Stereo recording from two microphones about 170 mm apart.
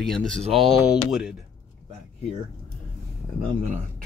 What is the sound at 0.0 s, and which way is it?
Speech, 5° left (ahead or behind).